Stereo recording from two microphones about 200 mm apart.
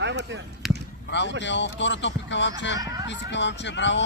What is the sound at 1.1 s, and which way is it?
Speech, 60° left (ahead or behind).